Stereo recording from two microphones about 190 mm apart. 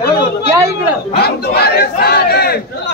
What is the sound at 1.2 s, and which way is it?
Speech, 55° left (ahead or behind).